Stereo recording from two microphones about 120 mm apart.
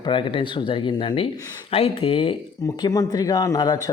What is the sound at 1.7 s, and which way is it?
Speech, 55° left (ahead or behind).